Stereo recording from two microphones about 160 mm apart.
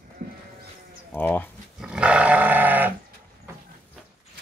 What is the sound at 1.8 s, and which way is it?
Goat, 5° right (ahead or behind).